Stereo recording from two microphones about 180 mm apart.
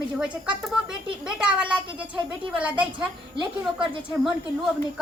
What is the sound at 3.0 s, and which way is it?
Speech, 25° right (ahead or behind).